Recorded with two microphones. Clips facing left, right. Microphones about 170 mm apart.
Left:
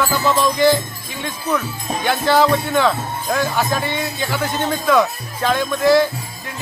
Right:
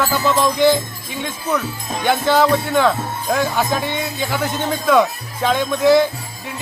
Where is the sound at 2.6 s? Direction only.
10° right (ahead or behind).